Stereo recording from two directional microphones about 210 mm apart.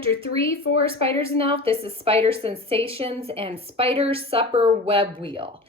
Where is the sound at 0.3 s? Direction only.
75° left (ahead or behind).